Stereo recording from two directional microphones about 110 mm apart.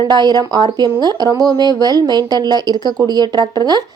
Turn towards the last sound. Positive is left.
turn(degrees=-40)  # may be behind; listen again after turning